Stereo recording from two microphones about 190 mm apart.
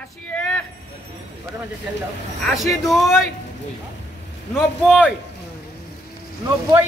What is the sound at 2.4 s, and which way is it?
Vehicle, centre (ahead or behind).